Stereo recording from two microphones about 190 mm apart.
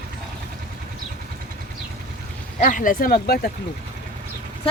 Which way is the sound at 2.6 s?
45° left (ahead or behind).